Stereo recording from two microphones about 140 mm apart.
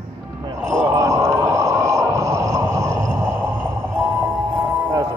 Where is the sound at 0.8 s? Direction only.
20° right (ahead or behind).